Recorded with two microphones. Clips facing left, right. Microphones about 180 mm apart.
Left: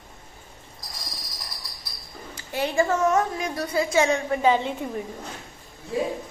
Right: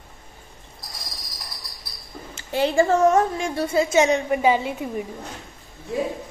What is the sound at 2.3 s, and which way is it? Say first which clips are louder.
A woman's voice: right 4 dB; 30° right (ahead or behind).